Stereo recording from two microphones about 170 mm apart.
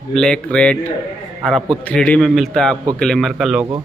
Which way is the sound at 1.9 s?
5° left (ahead or behind).